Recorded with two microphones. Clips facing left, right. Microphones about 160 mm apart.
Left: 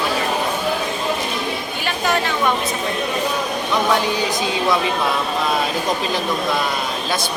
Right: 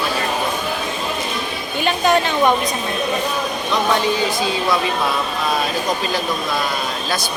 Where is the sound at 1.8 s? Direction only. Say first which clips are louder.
Right 6 dB; 20° right (ahead or behind).